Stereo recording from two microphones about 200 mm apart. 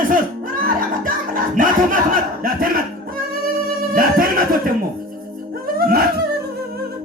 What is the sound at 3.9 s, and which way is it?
Speech, 45° right (ahead or behind).